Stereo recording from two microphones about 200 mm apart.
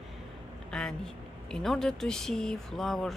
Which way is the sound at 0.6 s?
5° left (ahead or behind).